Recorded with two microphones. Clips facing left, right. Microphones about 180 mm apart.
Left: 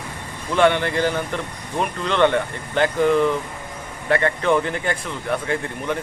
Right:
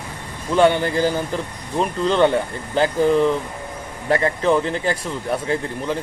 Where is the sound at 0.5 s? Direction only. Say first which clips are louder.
Right 2 dB; 35° right (ahead or behind).